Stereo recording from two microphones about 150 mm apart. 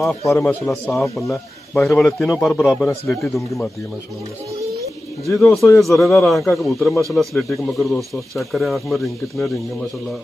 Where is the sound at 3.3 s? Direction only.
Centre (ahead or behind).